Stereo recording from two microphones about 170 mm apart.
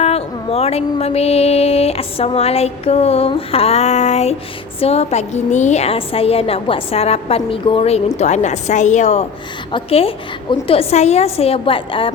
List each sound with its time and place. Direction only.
0.0 s a woman's voice: 35° left (ahead or behind)